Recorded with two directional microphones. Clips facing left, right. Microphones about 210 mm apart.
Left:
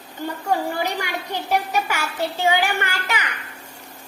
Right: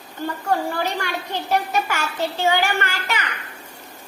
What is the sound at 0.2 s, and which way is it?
A child's voice, 15° left (ahead or behind).